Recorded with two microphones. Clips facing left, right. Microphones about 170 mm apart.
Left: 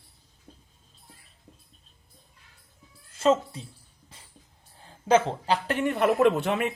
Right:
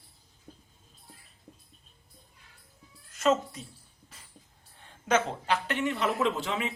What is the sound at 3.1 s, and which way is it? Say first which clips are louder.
Speech: left 3 dB; 30° left (ahead or behind).